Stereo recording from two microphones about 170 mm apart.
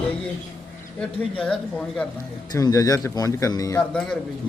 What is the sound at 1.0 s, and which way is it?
Speech, 5° left (ahead or behind).